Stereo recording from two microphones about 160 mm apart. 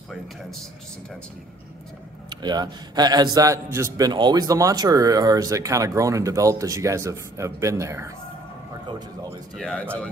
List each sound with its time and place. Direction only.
2.2 s a man's voice: 25° right (ahead or behind)
9.6 s speech: 5° left (ahead or behind)